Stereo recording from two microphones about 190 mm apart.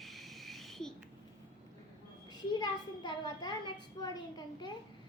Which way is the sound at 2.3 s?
25° left (ahead or behind).